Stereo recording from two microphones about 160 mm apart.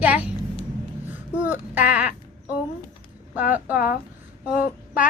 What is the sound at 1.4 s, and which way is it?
Speech, 10° right (ahead or behind).